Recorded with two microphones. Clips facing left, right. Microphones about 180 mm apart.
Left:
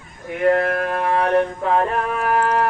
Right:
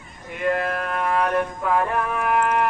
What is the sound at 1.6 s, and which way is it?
Music, 30° left (ahead or behind).